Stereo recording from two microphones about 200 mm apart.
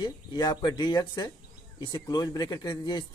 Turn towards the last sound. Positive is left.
turn(degrees=20)  # may be behind; listen again after turning